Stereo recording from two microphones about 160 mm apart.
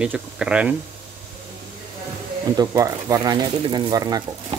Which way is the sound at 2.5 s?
20° right (ahead or behind).